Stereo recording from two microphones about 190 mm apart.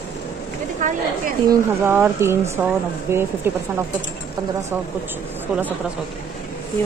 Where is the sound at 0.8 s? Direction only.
45° right (ahead or behind).